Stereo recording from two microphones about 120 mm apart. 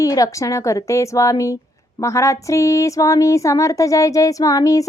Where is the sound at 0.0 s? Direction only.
30° left (ahead or behind).